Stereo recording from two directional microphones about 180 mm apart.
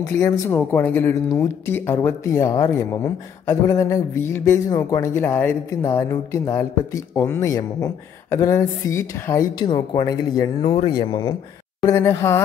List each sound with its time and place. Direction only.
0.2 s speech: 15° left (ahead or behind)